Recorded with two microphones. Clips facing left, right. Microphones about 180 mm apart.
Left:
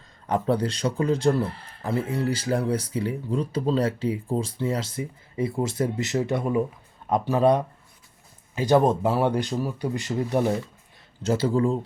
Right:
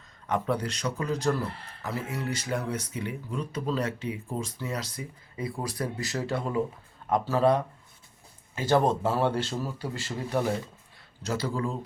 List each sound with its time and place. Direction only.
0.3 s speech: 30° left (ahead or behind)